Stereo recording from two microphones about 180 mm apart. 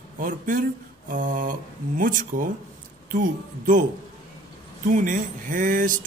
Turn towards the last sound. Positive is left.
turn(degrees=-50)  # may be behind; listen again after turning